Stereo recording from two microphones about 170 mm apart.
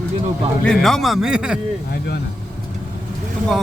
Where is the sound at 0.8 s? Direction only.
Centre (ahead or behind).